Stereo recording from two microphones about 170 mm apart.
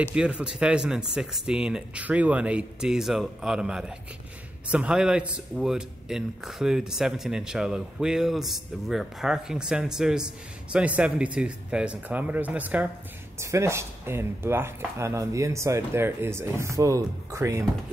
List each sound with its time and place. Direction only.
0.0 s speech: 5° right (ahead or behind)